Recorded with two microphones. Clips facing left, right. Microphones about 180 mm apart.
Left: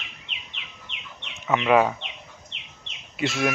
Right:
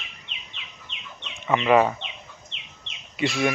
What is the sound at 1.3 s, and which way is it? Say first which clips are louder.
Speech: right 1 dB; centre (ahead or behind).